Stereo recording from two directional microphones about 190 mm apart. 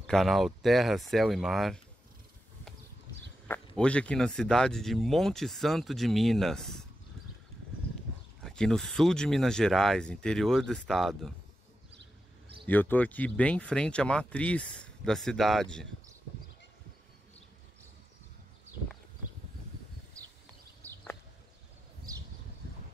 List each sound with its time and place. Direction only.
0.0 s speech: centre (ahead or behind)
3.4 s speech: 10° left (ahead or behind)
8.5 s speech: centre (ahead or behind)
12.6 s speech: 10° left (ahead or behind)